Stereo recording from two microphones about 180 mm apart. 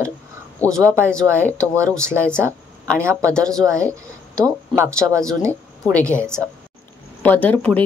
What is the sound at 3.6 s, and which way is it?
Speech, 15° right (ahead or behind).